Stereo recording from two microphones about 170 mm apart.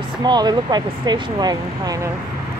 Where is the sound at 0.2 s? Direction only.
25° right (ahead or behind).